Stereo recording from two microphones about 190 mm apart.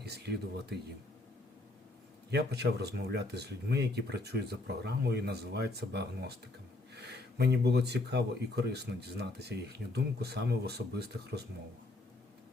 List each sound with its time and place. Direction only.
0.0 s speech: 60° right (ahead or behind)
2.3 s speech: 60° right (ahead or behind)